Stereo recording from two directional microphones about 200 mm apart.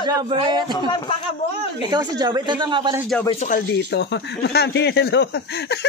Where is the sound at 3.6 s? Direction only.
55° left (ahead or behind).